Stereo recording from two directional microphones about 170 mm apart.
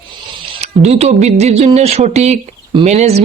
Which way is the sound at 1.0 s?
40° right (ahead or behind).